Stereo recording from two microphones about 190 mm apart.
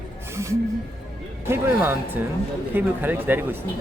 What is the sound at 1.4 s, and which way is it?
Speech, 15° right (ahead or behind).